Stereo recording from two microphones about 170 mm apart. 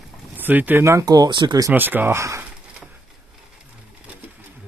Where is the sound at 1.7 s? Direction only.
10° right (ahead or behind).